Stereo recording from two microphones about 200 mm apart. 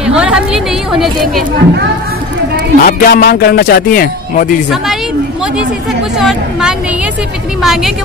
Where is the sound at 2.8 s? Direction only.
50° left (ahead or behind).